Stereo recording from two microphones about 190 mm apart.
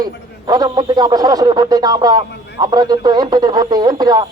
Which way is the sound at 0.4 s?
20° right (ahead or behind).